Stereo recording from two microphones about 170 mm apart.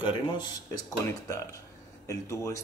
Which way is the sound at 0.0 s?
25° left (ahead or behind).